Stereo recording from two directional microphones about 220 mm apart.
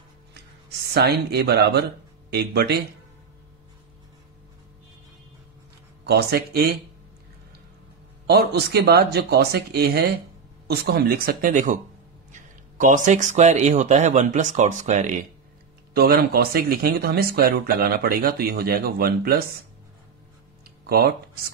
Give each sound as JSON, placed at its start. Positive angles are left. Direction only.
{"t": 0.9, "sound": "speech", "side_deg": -45}
{"t": 6.0, "sound": "speech", "side_deg": -45}
{"t": 8.3, "sound": "speech", "side_deg": -50}
{"t": 15.9, "sound": "speech", "side_deg": -45}
{"t": 20.8, "sound": "speech", "side_deg": -45}